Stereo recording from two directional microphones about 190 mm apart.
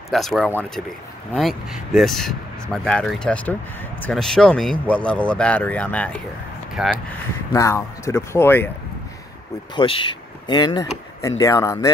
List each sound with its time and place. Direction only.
0.1 s speech: centre (ahead or behind)
6.7 s speech: centre (ahead or behind)
7.5 s speech: 15° left (ahead or behind)
9.8 s speech: 25° left (ahead or behind)